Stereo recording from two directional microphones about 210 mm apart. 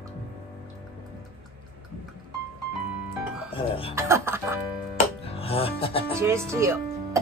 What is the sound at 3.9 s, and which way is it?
Music, 10° right (ahead or behind).